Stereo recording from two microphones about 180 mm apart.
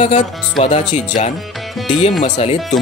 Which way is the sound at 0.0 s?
40° left (ahead or behind).